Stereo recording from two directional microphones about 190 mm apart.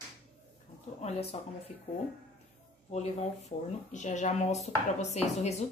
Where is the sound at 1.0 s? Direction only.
30° left (ahead or behind).